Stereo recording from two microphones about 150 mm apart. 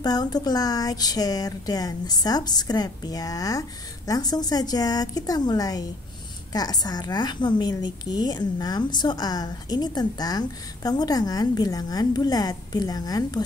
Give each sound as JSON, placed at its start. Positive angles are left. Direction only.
{"t": 0.0, "sound": "a woman's voice", "side_deg": 25}